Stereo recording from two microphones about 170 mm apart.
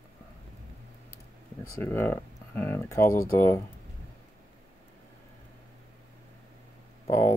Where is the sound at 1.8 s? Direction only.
10° left (ahead or behind).